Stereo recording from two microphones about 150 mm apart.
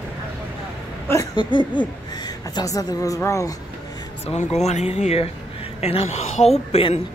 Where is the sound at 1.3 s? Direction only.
30° left (ahead or behind).